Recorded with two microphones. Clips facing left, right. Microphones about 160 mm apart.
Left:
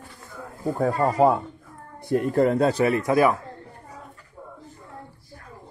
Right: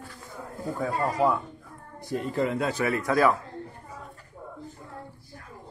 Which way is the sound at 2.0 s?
55° left (ahead or behind).